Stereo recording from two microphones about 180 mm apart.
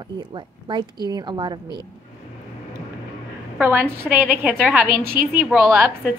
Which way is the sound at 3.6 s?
10° right (ahead or behind).